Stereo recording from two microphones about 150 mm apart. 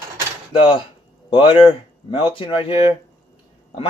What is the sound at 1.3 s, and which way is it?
Speech, 35° left (ahead or behind).